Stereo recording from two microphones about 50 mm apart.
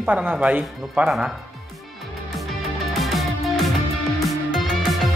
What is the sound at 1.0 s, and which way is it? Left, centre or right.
Speech, centre.